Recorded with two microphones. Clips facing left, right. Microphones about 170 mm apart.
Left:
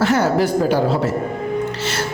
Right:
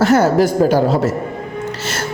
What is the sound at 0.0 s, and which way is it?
A woman's voice, 40° right (ahead or behind).